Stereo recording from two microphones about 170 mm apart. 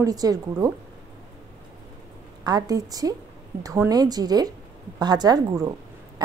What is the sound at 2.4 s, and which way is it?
Speech, 25° right (ahead or behind).